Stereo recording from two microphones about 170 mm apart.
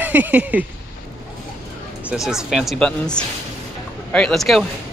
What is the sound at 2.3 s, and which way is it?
Speech, 5° right (ahead or behind).